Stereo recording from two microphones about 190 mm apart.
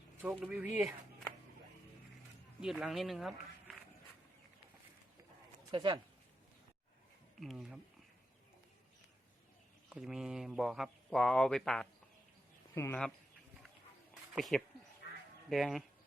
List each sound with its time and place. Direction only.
0.2 s speech: 5° right (ahead or behind)
2.6 s speech: 5° right (ahead or behind)
5.7 s speech: 25° right (ahead or behind)
7.3 s speech: centre (ahead or behind)
9.9 s speech: 5° right (ahead or behind)
14.1 s a sound: centre (ahead or behind)
15.4 s speech: centre (ahead or behind)